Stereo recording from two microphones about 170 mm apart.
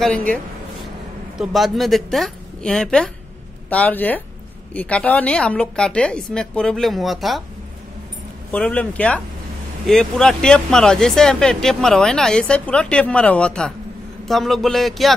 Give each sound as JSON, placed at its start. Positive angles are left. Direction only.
{"t": 0.0, "sound": "speech", "side_deg": 10}
{"t": 1.4, "sound": "speech", "side_deg": 0}
{"t": 8.5, "sound": "speech", "side_deg": 5}